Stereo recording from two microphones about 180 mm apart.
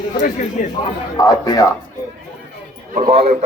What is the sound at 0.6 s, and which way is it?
Speech, 55° left (ahead or behind).